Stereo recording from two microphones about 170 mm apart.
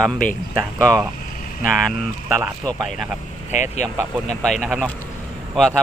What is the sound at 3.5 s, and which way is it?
Speech, 45° left (ahead or behind).